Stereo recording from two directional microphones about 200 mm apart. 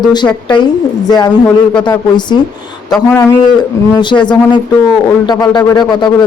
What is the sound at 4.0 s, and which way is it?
Speech, 20° left (ahead or behind).